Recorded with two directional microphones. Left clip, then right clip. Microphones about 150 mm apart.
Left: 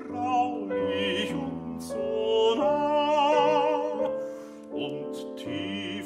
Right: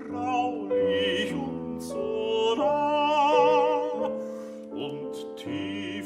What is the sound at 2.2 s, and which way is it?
Music, 10° right (ahead or behind).